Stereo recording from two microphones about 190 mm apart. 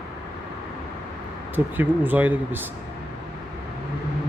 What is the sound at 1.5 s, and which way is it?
Speech, 10° right (ahead or behind).